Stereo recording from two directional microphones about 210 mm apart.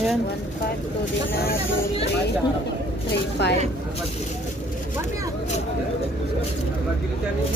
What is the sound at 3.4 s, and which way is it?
Speech, 55° left (ahead or behind).